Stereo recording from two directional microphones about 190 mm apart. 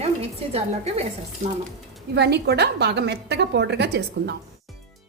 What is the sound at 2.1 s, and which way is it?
A woman's voice, 60° right (ahead or behind).